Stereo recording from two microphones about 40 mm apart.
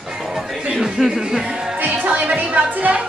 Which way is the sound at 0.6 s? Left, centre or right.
Centre.